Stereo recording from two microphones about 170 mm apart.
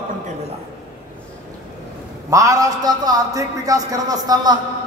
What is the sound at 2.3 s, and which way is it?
A man's voice, 20° right (ahead or behind).